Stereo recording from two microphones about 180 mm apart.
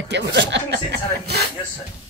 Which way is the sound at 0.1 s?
70° right (ahead or behind).